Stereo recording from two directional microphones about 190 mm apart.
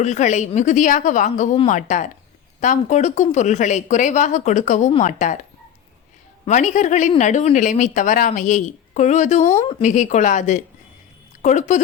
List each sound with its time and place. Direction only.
0.0 s a woman's voice: 40° left (ahead or behind)
6.4 s a woman's voice: 40° left (ahead or behind)